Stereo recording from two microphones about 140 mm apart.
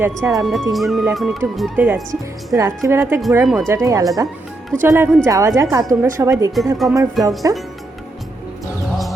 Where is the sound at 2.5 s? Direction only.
20° right (ahead or behind).